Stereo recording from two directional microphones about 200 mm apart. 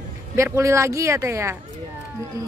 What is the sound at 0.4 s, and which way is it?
Speech, 15° right (ahead or behind).